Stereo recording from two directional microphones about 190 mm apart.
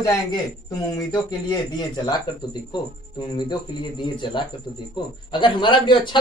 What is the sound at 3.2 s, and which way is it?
Speech, 25° left (ahead or behind).